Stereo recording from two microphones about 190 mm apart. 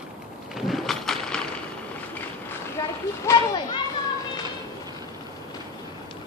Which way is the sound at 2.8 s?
15° left (ahead or behind).